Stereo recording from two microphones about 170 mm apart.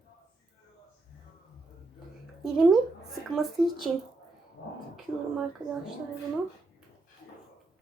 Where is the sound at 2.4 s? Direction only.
Centre (ahead or behind).